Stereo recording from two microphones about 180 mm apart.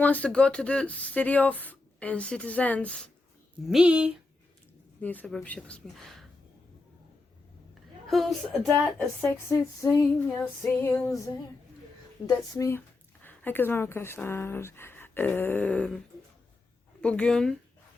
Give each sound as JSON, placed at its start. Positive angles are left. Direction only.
{"t": 0.0, "sound": "speech", "side_deg": 10}
{"t": 3.7, "sound": "speech", "side_deg": -5}
{"t": 4.9, "sound": "speech", "side_deg": 10}
{"t": 8.0, "sound": "speech", "side_deg": 0}
{"t": 17.0, "sound": "speech", "side_deg": 5}